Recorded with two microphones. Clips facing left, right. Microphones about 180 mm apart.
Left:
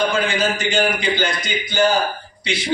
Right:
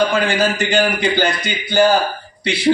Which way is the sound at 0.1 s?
60° right (ahead or behind).